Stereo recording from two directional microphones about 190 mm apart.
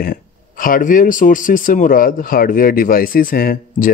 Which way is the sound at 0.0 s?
50° left (ahead or behind).